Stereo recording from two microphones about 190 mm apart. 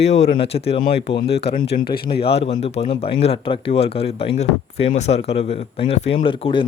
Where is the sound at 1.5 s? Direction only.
55° left (ahead or behind).